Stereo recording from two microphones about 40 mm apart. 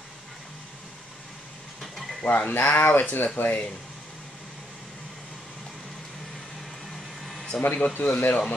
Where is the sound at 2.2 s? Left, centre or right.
Left.